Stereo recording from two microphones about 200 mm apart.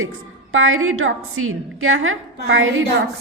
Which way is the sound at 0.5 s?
90° right.